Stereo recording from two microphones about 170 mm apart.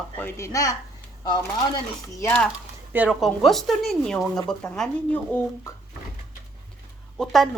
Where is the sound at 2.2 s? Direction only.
10° left (ahead or behind).